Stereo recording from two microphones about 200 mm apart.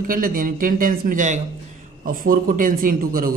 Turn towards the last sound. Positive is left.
turn(degrees=-45)  # may be behind; listen again after turning